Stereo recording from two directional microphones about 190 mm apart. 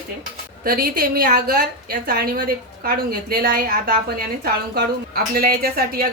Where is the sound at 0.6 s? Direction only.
50° right (ahead or behind).